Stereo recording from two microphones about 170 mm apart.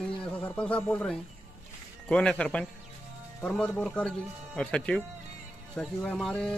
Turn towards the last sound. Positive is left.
turn(degrees=5)  # may be behind; listen again after turning